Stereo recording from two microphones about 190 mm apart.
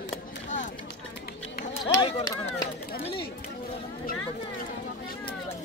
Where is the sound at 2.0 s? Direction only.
20° left (ahead or behind).